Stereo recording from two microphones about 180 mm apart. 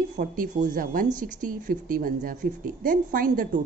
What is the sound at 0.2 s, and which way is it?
A woman's voice, 45° right (ahead or behind).